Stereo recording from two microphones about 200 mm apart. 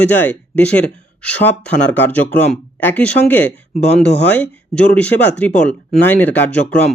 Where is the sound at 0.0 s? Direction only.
10° left (ahead or behind).